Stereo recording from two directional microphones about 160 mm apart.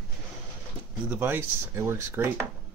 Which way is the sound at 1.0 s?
10° right (ahead or behind).